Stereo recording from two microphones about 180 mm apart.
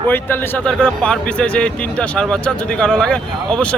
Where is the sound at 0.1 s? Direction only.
10° left (ahead or behind).